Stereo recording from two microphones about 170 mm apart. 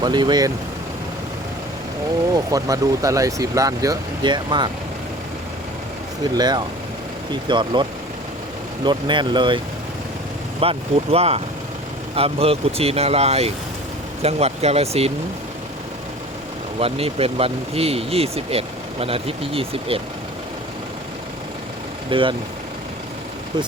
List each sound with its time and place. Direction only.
0.0 s speech: 25° right (ahead or behind)
2.3 s speech: 20° right (ahead or behind)
6.3 s speech: 25° right (ahead or behind)
10.6 s speech: 35° right (ahead or behind)
16.8 s speech: 35° right (ahead or behind)
22.1 s speech: 30° right (ahead or behind)